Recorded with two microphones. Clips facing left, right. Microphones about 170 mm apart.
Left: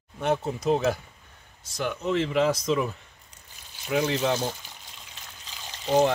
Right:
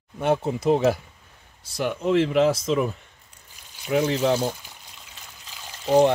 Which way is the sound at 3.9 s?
10° right (ahead or behind).